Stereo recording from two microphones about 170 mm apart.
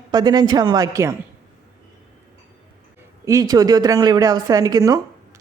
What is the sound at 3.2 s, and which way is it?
A woman's voice, 20° right (ahead or behind).